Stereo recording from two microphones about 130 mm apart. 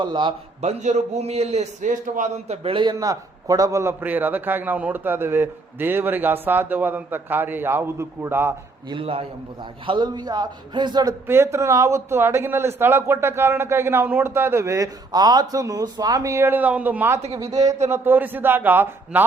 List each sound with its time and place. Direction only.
0.0 s a man's voice: 35° right (ahead or behind)
0.6 s a man's voice: 60° right (ahead or behind); by 2.3 s 85° right
2.5 s a man's voice: 45° right (ahead or behind)
2.9 s a man's voice: 30° right (ahead or behind)
8.9 s a man's voice: 45° right (ahead or behind)
11.3 s a man's voice: 20° right (ahead or behind)